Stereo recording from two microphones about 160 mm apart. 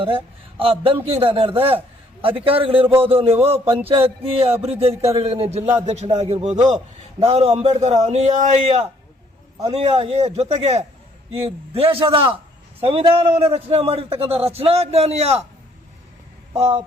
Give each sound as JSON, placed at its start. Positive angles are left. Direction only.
{"t": 0.6, "sound": "a man's voice", "side_deg": -35}
{"t": 16.6, "sound": "a man's voice", "side_deg": -40}